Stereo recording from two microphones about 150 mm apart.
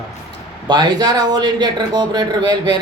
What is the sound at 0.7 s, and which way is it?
A man's voice, 30° right (ahead or behind).